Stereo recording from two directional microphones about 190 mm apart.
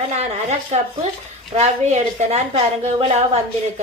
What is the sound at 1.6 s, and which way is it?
A woman's voice, 35° right (ahead or behind).